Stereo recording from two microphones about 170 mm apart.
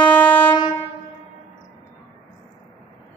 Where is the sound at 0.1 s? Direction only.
10° left (ahead or behind).